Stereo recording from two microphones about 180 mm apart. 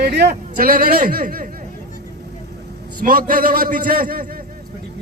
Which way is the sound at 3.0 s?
50° right (ahead or behind).